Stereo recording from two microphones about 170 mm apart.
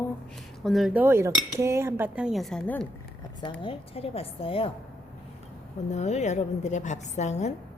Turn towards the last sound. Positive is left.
turn(degrees=40)  # may be behind; listen again after turning